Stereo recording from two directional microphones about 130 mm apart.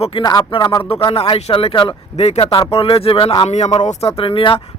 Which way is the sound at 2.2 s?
55° left (ahead or behind).